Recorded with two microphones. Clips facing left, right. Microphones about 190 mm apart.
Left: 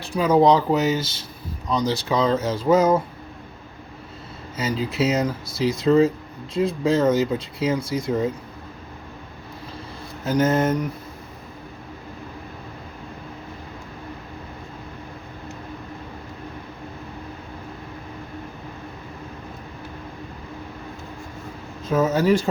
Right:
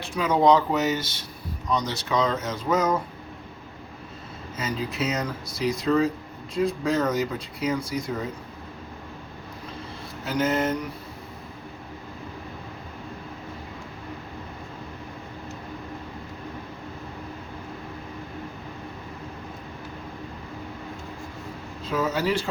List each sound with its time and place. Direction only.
0.0 s speech: 35° left (ahead or behind)
4.5 s speech: 25° left (ahead or behind)
10.2 s speech: 45° left (ahead or behind)
21.8 s speech: 45° left (ahead or behind)